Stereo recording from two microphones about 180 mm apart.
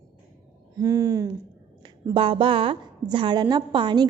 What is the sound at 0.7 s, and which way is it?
Speech, 15° right (ahead or behind).